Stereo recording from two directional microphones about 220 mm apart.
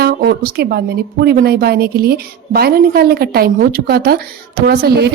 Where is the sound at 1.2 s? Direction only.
45° right (ahead or behind).